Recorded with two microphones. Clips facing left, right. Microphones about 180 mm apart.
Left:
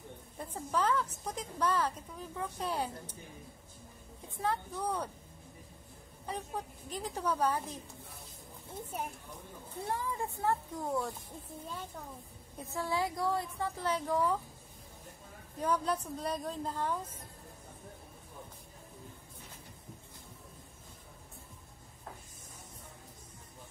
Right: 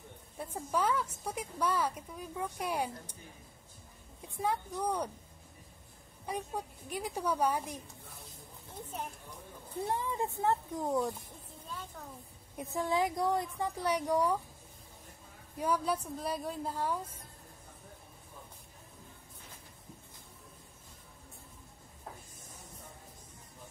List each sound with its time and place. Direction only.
0.4 s a woman's voice: 10° right (ahead or behind)
4.4 s a woman's voice: 10° right (ahead or behind)
6.2 s a woman's voice: 10° right (ahead or behind)
9.8 s speech: 20° right (ahead or behind)
12.5 s a woman's voice: 15° right (ahead or behind)
15.5 s a woman's voice: 10° right (ahead or behind)